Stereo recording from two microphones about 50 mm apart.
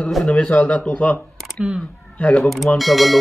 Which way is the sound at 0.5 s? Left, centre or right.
Left.